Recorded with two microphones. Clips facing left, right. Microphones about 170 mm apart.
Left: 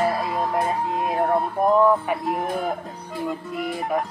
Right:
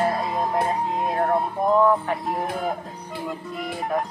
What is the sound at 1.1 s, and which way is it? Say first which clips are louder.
Music: left 2 dB; centre (ahead or behind).